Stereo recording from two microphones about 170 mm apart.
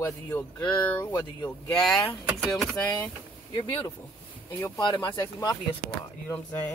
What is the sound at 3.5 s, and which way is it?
Speech, 25° left (ahead or behind).